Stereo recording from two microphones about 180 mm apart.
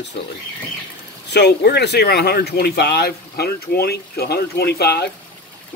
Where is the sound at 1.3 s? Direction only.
65° left (ahead or behind).